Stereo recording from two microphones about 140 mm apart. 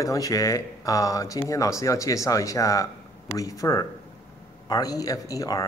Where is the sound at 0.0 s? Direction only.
25° left (ahead or behind).